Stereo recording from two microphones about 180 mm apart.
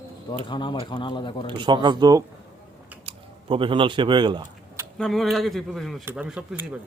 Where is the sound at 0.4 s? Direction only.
25° left (ahead or behind).